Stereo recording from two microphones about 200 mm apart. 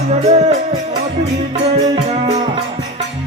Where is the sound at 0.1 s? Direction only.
35° right (ahead or behind).